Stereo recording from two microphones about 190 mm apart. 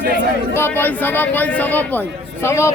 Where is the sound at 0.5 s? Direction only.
10° left (ahead or behind).